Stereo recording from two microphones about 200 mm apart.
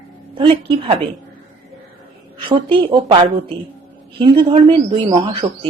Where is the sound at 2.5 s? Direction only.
25° right (ahead or behind).